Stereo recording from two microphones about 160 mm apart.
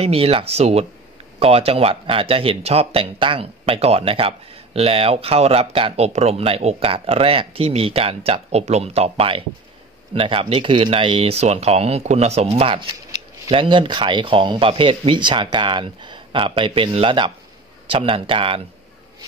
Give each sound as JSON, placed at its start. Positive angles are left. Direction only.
{"t": 0.0, "sound": "speech", "side_deg": -35}